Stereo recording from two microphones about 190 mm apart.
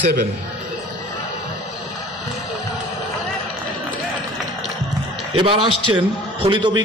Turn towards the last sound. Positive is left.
turn(degrees=-25)  # may be behind; listen again after turning